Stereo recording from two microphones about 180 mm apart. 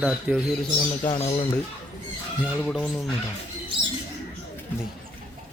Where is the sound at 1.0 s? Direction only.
30° left (ahead or behind).